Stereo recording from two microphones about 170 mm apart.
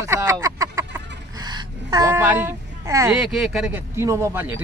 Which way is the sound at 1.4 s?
25° right (ahead or behind).